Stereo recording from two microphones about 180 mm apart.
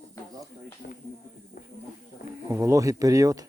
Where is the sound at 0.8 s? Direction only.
50° left (ahead or behind).